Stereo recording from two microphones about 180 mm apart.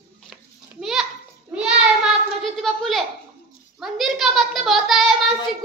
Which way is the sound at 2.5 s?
Centre (ahead or behind).